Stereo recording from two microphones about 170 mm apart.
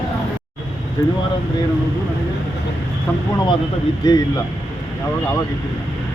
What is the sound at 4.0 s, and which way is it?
Speech, 20° left (ahead or behind).